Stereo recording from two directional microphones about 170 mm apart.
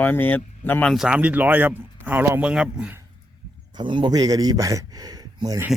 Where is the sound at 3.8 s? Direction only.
30° right (ahead or behind).